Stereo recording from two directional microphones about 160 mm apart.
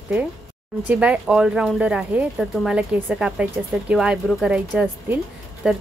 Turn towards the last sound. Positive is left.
turn(degrees=-5)  # may be behind; listen again after turning